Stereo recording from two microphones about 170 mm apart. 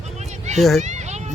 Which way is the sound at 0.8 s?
45° right (ahead or behind).